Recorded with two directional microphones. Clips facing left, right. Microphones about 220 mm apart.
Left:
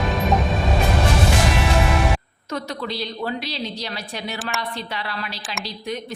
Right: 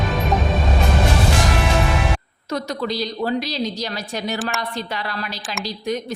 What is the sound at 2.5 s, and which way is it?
A woman's voice, 40° right (ahead or behind).